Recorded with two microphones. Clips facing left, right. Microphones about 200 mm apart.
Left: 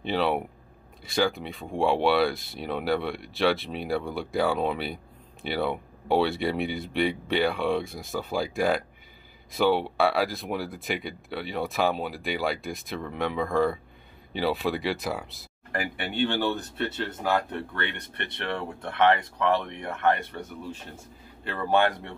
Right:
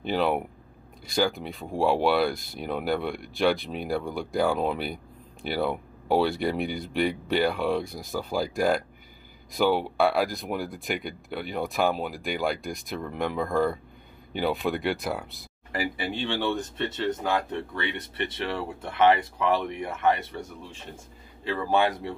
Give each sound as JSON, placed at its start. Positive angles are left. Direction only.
{"t": 0.1, "sound": "speech", "side_deg": 0}
{"t": 21.5, "sound": "speech", "side_deg": 0}